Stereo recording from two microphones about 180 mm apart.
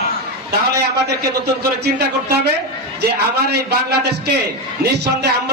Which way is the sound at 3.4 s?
60° right (ahead or behind).